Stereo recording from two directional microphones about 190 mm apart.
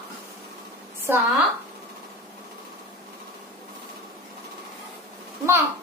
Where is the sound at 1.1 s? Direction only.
10° right (ahead or behind).